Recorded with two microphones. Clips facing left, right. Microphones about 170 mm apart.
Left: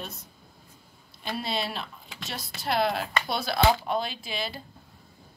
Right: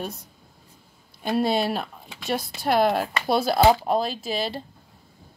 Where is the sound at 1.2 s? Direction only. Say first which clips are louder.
Right 9 dB; 50° right (ahead or behind).